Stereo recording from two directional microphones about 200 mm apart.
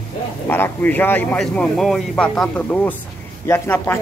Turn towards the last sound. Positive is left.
turn(degrees=10)  # may be behind; listen again after turning